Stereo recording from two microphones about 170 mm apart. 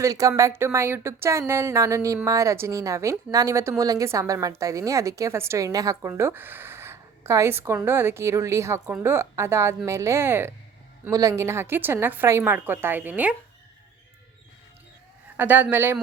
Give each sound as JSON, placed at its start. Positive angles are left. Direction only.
{"t": 0.0, "sound": "a woman's voice", "side_deg": -20}
{"t": 15.4, "sound": "a woman's voice", "side_deg": -10}